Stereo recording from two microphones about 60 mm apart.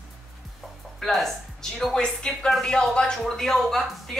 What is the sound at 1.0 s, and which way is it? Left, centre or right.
A woman's voice, centre.